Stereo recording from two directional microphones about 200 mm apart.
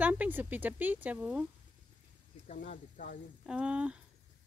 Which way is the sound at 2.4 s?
40° left (ahead or behind).